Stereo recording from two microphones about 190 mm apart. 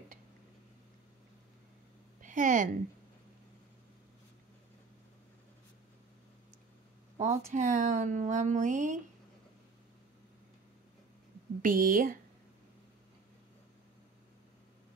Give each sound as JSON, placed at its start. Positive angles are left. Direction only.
{"t": 2.2, "sound": "a sound", "side_deg": -40}
{"t": 7.2, "sound": "speech", "side_deg": -40}
{"t": 11.6, "sound": "speech", "side_deg": -45}